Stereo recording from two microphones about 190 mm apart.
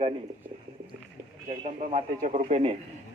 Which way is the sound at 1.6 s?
30° right (ahead or behind).